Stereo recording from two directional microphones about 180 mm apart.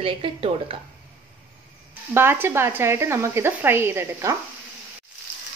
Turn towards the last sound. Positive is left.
turn(degrees=-15)  # may be behind; listen again after turning